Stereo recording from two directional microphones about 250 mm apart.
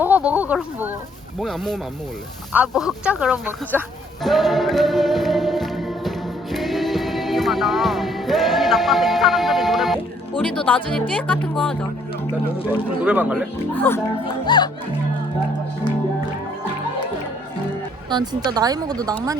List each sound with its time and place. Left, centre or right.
0.0 s speech: centre
2.5 s a sound: centre
10.7 s speech: centre
13.1 s speech: centre
13.7 s speech: centre
18.1 s speech: centre